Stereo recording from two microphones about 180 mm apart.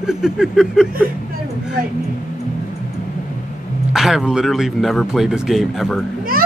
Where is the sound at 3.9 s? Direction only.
Centre (ahead or behind).